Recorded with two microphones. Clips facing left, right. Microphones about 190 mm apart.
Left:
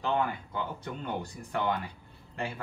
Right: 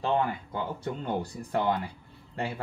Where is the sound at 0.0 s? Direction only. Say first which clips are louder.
Right 2 dB; 35° right (ahead or behind).